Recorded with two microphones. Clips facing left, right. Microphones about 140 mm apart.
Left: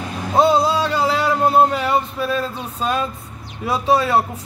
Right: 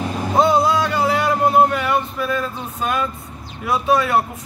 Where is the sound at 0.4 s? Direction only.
30° left (ahead or behind).